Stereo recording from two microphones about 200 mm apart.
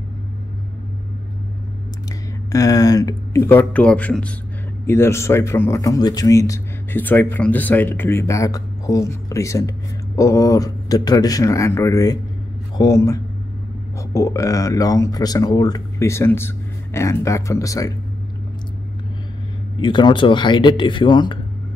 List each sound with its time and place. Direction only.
2.5 s a man's voice: 15° left (ahead or behind)
19.8 s speech: 25° left (ahead or behind)